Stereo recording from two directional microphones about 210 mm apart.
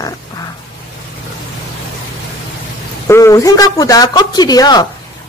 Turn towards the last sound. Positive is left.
turn(degrees=20)  # may be behind; listen again after turning